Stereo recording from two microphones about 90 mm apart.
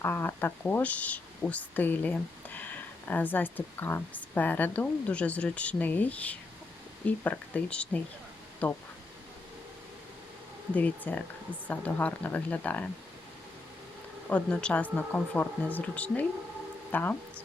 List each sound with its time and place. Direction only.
0.0 s a woman's voice: 25° left (ahead or behind)
10.8 s speech: 15° left (ahead or behind)
14.3 s a woman's voice: 10° left (ahead or behind)